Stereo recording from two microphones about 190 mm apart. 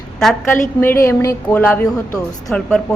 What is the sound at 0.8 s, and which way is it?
A woman's voice, 15° left (ahead or behind).